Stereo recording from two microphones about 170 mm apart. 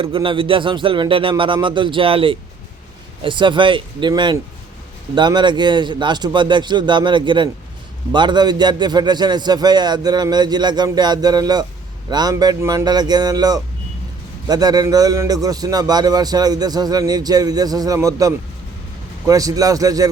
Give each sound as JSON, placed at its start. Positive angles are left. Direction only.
{"t": 0.0, "sound": "a man's voice", "side_deg": -30}